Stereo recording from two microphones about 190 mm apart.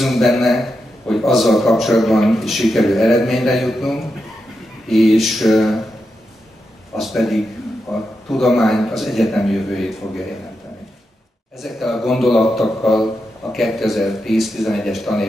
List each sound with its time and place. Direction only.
0.0 s a man's voice: centre (ahead or behind)
7.0 s a man's voice: centre (ahead or behind)
11.6 s a man's voice: centre (ahead or behind)